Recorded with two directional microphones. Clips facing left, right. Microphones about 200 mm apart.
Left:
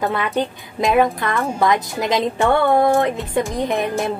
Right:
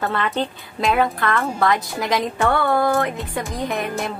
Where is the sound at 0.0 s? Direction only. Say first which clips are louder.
Left 2 dB; 15° left (ahead or behind).